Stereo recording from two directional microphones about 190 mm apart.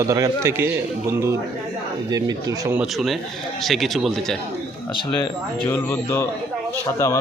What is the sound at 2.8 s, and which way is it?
Speech, centre (ahead or behind).